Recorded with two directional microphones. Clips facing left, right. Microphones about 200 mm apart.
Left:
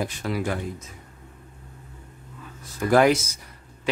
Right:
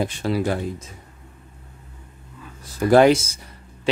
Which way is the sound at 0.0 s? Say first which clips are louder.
Right 5 dB; 30° right (ahead or behind).